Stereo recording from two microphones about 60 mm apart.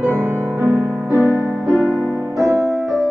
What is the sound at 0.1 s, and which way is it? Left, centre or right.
Music, right.